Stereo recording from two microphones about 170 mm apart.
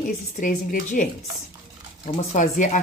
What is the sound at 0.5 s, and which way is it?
Speech, 60° left (ahead or behind).